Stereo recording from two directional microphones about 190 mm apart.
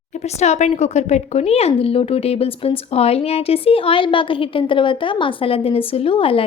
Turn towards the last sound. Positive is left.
turn(degrees=30)  # may be behind; listen again after turning